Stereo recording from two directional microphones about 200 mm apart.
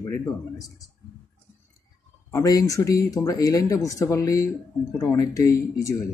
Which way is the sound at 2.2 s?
15° left (ahead or behind).